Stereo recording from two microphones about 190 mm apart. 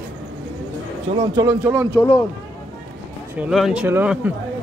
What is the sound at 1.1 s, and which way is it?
Speech, 15° right (ahead or behind).